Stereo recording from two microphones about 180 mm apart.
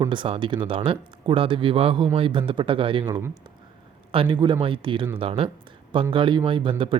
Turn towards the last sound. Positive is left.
turn(degrees=-30)  # may be behind; listen again after turning